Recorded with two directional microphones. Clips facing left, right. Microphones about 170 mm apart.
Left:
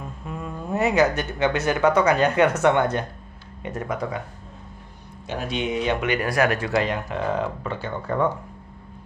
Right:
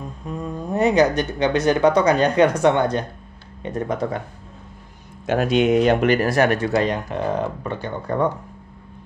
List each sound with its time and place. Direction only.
0.6 s speech: 20° right (ahead or behind)
2.8 s speech: 30° right (ahead or behind)
5.3 s speech: 80° right
5.8 s speech: 50° right (ahead or behind)
6.3 s speech: 25° right (ahead or behind)